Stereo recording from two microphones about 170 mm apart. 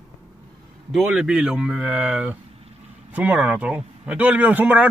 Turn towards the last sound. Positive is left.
turn(degrees=-10)  # may be behind; listen again after turning